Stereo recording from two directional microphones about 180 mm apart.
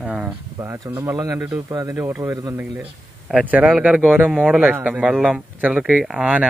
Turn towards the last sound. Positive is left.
turn(degrees=-10)  # may be behind; listen again after turning